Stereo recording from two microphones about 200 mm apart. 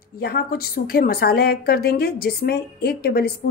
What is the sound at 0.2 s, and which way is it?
A woman's voice, 50° left (ahead or behind).